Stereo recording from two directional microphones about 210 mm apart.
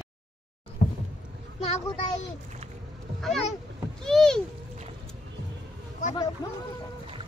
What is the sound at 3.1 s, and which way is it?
Speech, centre (ahead or behind).